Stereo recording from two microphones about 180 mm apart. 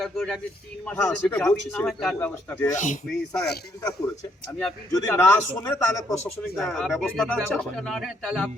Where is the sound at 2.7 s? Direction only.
45° left (ahead or behind).